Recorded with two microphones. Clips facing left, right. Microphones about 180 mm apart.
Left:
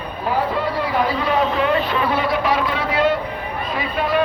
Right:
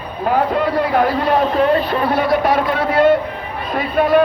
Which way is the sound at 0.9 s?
55° right (ahead or behind).